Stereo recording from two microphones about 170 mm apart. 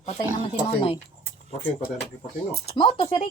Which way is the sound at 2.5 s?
35° left (ahead or behind).